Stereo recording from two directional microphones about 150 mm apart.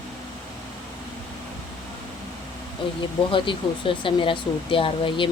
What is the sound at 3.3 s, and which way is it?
Speech, 35° left (ahead or behind).